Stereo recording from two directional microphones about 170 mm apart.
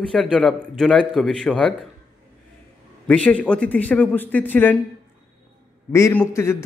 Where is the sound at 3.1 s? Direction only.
10° left (ahead or behind).